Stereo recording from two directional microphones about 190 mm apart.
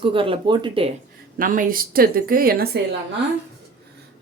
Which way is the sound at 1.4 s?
45° right (ahead or behind).